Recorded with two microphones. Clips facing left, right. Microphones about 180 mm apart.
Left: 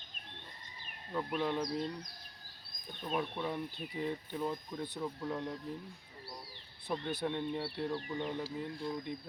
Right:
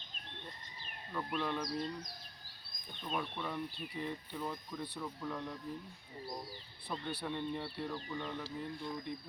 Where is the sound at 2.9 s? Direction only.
10° left (ahead or behind).